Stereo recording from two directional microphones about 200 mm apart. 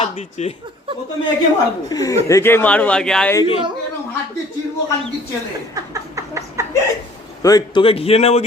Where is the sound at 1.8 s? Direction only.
20° left (ahead or behind).